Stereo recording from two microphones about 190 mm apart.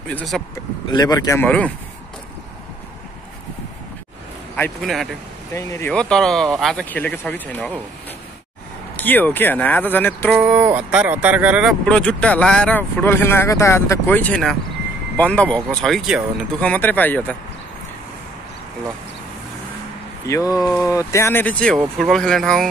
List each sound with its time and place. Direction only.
0.1 s speech: centre (ahead or behind)
0.9 s speech: 20° left (ahead or behind)
4.6 s speech: 10° left (ahead or behind)
5.9 s speech: 5° left (ahead or behind)
8.9 s speech: 10° left (ahead or behind)
10.3 s speech: 10° right (ahead or behind)
11.8 s speech: 5° left (ahead or behind)
20.2 s speech: 15° left (ahead or behind)
20.6 s speech: centre (ahead or behind)
20.9 s speech: 15° left (ahead or behind)